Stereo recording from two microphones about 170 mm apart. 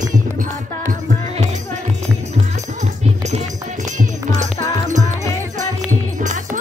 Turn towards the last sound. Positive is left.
turn(degrees=-45)  # may be behind; listen again after turning